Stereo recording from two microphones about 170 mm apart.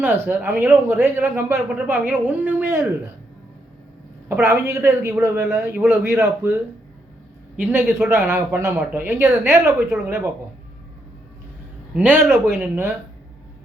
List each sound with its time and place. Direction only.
0.0 s a man's voice: 10° right (ahead or behind)
4.3 s a man's voice: 15° right (ahead or behind)
7.6 s a man's voice: 15° right (ahead or behind)
11.9 s a man's voice: 10° right (ahead or behind)